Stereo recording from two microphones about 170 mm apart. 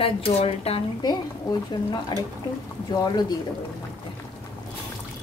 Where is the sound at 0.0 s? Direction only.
35° left (ahead or behind).